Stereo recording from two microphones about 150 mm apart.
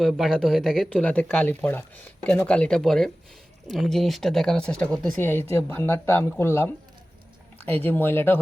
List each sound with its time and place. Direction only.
0.0 s speech: centre (ahead or behind)